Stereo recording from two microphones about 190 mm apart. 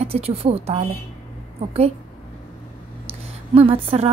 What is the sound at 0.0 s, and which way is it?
Speech, 30° right (ahead or behind).